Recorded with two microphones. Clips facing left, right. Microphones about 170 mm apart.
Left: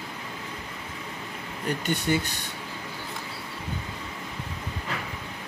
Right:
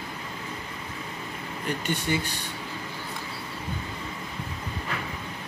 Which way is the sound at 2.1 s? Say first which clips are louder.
Left 3 dB; 50° left (ahead or behind).